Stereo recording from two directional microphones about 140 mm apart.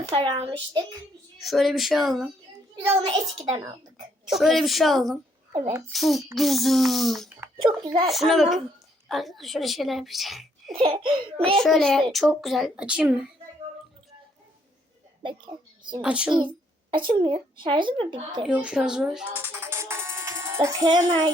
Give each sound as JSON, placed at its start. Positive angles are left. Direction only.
{"t": 0.1, "sound": "a child's voice", "side_deg": -45}
{"t": 1.4, "sound": "speech", "side_deg": 0}
{"t": 3.1, "sound": "a child's voice", "side_deg": -20}
{"t": 4.3, "sound": "speech", "side_deg": 0}
{"t": 7.5, "sound": "a child's voice", "side_deg": -35}
{"t": 8.1, "sound": "a woman's voice", "side_deg": 0}
{"t": 10.8, "sound": "a child's voice", "side_deg": -40}
{"t": 11.6, "sound": "speech", "side_deg": 5}
{"t": 16.0, "sound": "a woman's voice", "side_deg": -10}
{"t": 16.9, "sound": "a child's voice", "side_deg": -35}
{"t": 18.4, "sound": "speech", "side_deg": -5}
{"t": 19.5, "sound": "music", "side_deg": -15}